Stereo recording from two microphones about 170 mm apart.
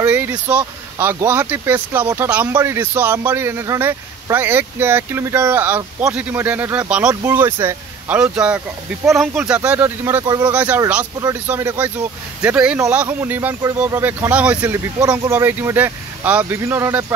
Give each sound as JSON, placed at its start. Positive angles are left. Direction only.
{"t": 0.0, "sound": "a man's voice", "side_deg": -10}
{"t": 10.5, "sound": "a man's voice", "side_deg": -10}
{"t": 15.0, "sound": "a man's voice", "side_deg": -20}